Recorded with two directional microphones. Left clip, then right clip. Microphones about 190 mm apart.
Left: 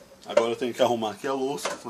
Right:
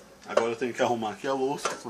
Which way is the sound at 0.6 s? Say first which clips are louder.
Left 3 dB; 25° left (ahead or behind).